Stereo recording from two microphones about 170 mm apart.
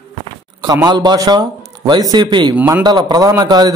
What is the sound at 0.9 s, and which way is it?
A man's voice, 25° right (ahead or behind).